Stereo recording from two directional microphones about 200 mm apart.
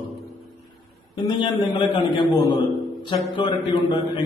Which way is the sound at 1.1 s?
25° left (ahead or behind).